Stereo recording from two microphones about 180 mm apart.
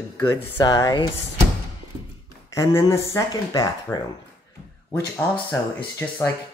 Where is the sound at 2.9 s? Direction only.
15° left (ahead or behind).